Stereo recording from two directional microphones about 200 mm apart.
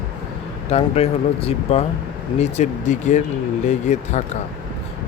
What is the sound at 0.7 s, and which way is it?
Speech, 30° left (ahead or behind).